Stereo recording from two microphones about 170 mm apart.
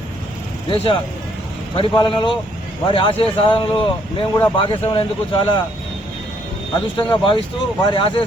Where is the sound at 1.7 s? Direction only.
30° left (ahead or behind).